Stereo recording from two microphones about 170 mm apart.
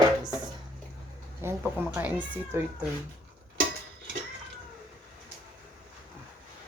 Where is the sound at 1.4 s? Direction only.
15° right (ahead or behind).